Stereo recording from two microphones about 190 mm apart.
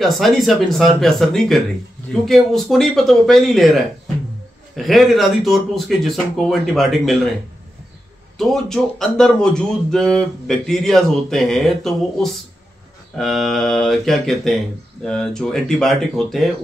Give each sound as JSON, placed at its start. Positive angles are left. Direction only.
{"t": 0.0, "sound": "speech", "side_deg": 0}
{"t": 8.4, "sound": "speech", "side_deg": 0}